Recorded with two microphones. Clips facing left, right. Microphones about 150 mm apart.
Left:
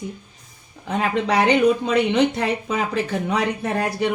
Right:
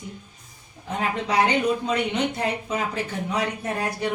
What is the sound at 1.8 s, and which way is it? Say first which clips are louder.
A woman's voice: left 6 dB; 80° left.